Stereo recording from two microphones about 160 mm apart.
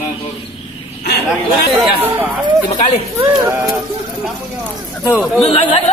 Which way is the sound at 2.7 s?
45° left (ahead or behind).